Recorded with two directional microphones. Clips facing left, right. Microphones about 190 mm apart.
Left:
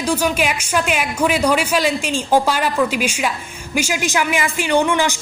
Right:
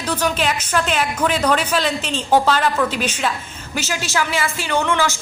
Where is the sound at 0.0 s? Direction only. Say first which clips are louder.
Left 2 dB; 10° left (ahead or behind).